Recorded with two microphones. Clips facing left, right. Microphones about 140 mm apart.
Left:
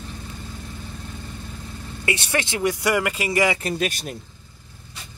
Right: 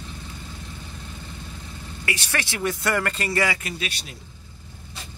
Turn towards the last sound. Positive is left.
turn(degrees=50)  # may be behind; listen again after turning